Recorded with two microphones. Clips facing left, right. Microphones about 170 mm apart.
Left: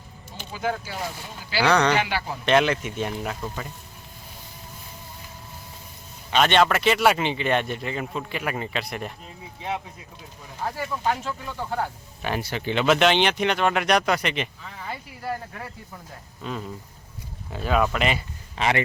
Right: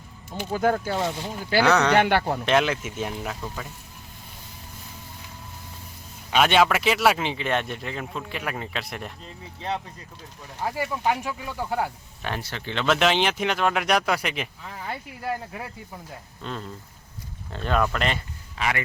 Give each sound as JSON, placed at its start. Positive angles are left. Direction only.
{"t": 0.3, "sound": "speech", "side_deg": -50}
{"t": 1.6, "sound": "speech", "side_deg": -5}
{"t": 2.0, "sound": "speech", "side_deg": -55}
{"t": 2.5, "sound": "speech", "side_deg": 0}
{"t": 6.3, "sound": "speech", "side_deg": -5}
{"t": 10.6, "sound": "speech", "side_deg": -10}
{"t": 12.2, "sound": "speech", "side_deg": 10}
{"t": 16.4, "sound": "speech", "side_deg": 5}
{"t": 18.5, "sound": "speech", "side_deg": 25}